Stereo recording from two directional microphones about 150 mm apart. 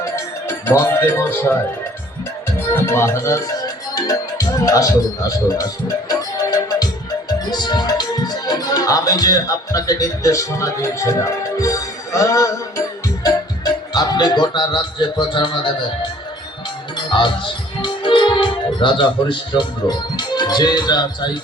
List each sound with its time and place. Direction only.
0.0 s music: 20° left (ahead or behind)
2.6 s music: 15° left (ahead or behind)
3.9 s speech: 25° left (ahead or behind)
5.5 s music: 25° left (ahead or behind)
13.9 s a man's voice: 30° left (ahead or behind)
17.1 s speech: 30° left (ahead or behind)